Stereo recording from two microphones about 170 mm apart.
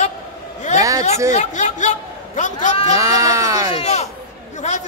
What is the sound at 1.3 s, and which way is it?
A man's voice, 45° left (ahead or behind).